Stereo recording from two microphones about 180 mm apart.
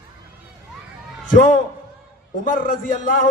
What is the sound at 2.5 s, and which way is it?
Speech, 45° left (ahead or behind).